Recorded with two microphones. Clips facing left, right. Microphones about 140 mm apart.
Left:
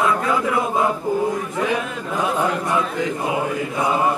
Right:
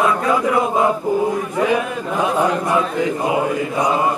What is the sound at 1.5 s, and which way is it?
Speech, 15° right (ahead or behind).